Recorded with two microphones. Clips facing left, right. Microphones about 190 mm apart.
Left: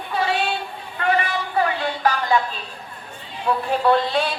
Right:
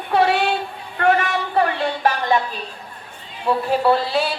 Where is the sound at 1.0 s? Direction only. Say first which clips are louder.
Right 4 dB; 45° right (ahead or behind).